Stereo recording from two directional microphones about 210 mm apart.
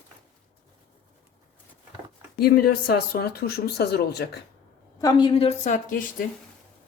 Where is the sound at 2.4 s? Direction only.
45° left (ahead or behind).